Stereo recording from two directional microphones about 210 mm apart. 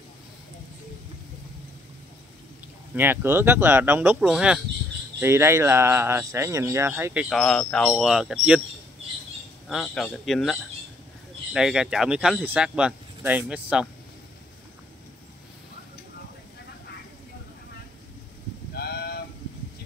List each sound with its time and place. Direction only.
3.0 s speech: 10° right (ahead or behind)
7.2 s speech: 5° left (ahead or behind)
9.7 s speech: centre (ahead or behind)
18.8 s a sound: 50° left (ahead or behind)